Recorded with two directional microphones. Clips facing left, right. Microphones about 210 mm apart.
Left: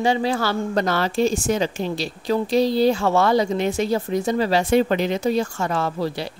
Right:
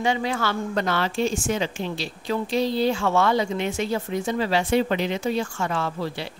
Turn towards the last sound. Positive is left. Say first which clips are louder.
# left 4 dB
turn(degrees=40)  # may be behind; listen again after turning